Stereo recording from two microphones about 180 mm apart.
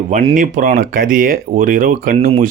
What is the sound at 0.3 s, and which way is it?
Speech, 50° right (ahead or behind).